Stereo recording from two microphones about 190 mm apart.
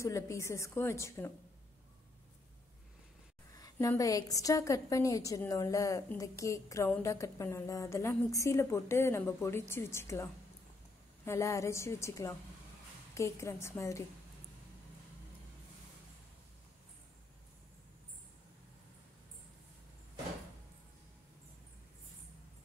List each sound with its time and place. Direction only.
0.0 s a woman's voice: 15° left (ahead or behind)
3.5 s a woman's voice: 20° left (ahead or behind)